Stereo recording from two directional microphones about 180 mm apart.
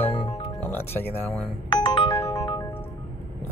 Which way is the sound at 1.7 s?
30° left (ahead or behind).